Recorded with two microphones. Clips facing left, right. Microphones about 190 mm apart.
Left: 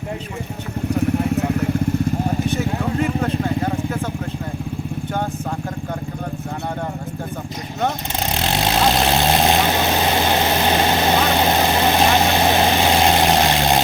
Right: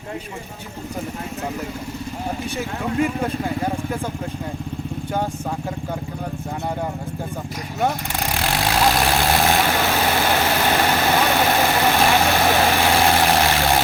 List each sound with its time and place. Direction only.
3.0 s speech: 10° right (ahead or behind)
8.3 s vehicle: 20° left (ahead or behind)